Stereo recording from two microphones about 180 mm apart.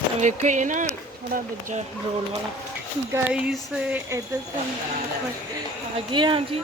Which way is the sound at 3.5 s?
10° right (ahead or behind).